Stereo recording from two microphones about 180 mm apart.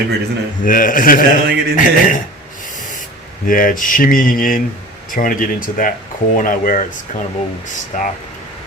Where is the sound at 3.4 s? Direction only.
50° left (ahead or behind).